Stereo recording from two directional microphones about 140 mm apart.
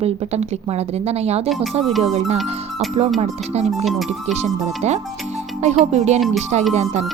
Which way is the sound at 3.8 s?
Centre (ahead or behind).